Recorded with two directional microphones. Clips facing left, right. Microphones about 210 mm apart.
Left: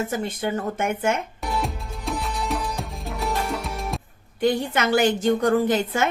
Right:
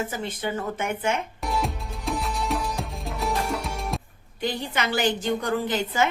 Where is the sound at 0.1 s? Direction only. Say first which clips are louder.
Left 4 dB; 50° left (ahead or behind).